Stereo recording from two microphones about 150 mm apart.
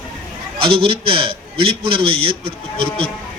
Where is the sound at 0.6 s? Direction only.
35° right (ahead or behind).